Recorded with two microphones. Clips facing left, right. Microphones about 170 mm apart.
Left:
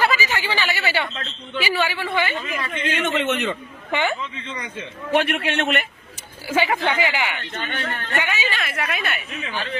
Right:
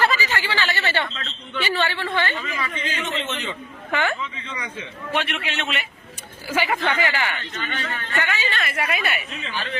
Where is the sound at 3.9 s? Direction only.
20° left (ahead or behind).